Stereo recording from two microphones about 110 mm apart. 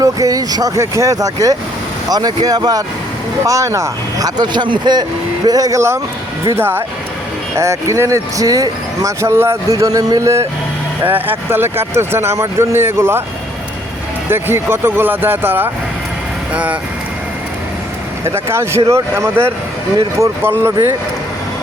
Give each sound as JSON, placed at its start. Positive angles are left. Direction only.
{"t": 0.0, "sound": "speech", "side_deg": -30}
{"t": 11.0, "sound": "speech", "side_deg": -15}
{"t": 14.3, "sound": "speech", "side_deg": -20}
{"t": 18.3, "sound": "speech", "side_deg": -25}